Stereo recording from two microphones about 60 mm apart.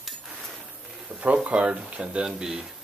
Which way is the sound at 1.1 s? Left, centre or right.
Right.